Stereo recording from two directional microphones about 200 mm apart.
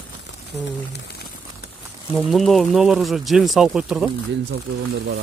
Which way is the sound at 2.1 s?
Centre (ahead or behind).